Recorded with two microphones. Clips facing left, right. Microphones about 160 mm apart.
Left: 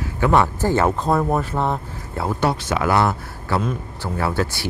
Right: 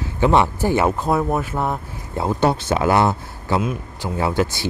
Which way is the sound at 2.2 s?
20° right (ahead or behind).